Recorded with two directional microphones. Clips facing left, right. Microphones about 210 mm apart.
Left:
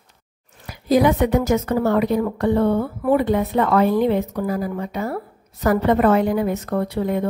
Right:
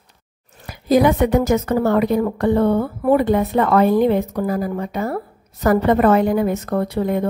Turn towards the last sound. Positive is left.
turn(degrees=-45)  # may be behind; listen again after turning